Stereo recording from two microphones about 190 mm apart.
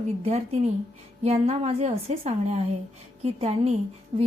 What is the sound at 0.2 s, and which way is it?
A woman's voice, 35° right (ahead or behind).